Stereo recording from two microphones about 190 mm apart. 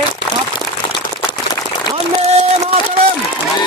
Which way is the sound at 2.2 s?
35° right (ahead or behind).